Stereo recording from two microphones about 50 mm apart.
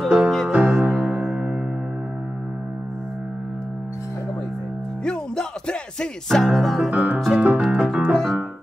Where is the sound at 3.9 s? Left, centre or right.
Left.